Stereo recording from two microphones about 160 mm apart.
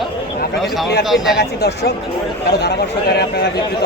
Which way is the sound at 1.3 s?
90° left.